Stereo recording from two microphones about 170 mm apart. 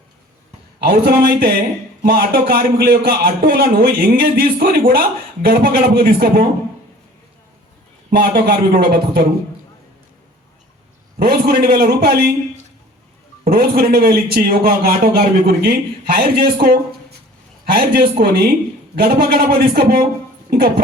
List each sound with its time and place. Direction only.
0.8 s a man's voice: 70° right (ahead or behind)
8.1 s a man's voice: 65° right (ahead or behind)
11.2 s a man's voice: 65° right (ahead or behind)
13.4 s a man's voice: 60° right (ahead or behind)